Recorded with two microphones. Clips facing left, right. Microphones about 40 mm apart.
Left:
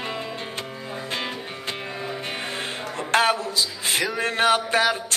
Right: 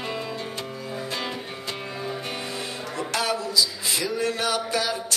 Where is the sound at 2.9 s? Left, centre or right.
Left.